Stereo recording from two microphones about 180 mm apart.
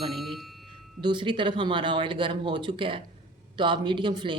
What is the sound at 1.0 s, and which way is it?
Speech, 25° right (ahead or behind).